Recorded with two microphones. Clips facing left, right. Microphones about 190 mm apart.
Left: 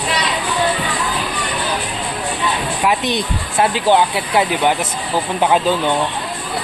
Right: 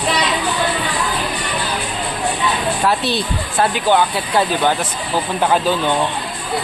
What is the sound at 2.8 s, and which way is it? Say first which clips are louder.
Speech: left 2 dB; 15° left (ahead or behind).